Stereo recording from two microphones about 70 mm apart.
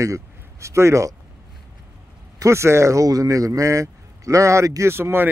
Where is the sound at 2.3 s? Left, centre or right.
Right.